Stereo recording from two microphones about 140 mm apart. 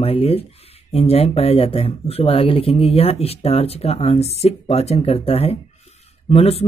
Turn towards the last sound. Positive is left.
turn(degrees=45)  # may be behind; listen again after turning